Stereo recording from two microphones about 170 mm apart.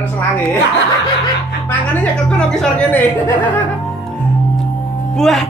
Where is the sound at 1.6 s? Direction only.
5° left (ahead or behind).